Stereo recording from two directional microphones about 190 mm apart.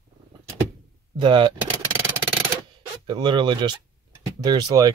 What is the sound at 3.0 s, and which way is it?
Speech, 25° right (ahead or behind).